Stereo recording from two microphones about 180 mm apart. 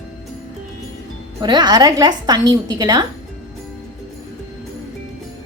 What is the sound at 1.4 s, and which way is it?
A woman's voice, 20° right (ahead or behind).